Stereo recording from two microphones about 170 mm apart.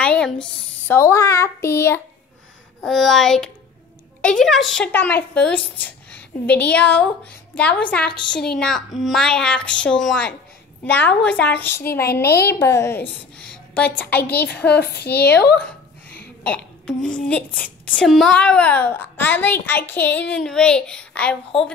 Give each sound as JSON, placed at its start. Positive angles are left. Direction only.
{"t": 0.0, "sound": "a child's voice", "side_deg": 5}
{"t": 2.8, "sound": "a child's voice", "side_deg": 0}
{"t": 12.2, "sound": "speech", "side_deg": 70}
{"t": 12.5, "sound": "a woman's voice", "side_deg": 15}
{"t": 14.7, "sound": "speech", "side_deg": 70}
{"t": 15.5, "sound": "a sound", "side_deg": 10}
{"t": 16.4, "sound": "babbling", "side_deg": 5}
{"t": 17.3, "sound": "a woman's voice", "side_deg": 10}